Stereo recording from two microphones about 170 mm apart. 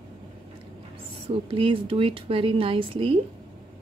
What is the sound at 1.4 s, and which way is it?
A woman's voice, 30° right (ahead or behind).